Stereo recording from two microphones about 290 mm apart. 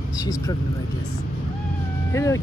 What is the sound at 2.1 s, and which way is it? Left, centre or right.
Speech, centre.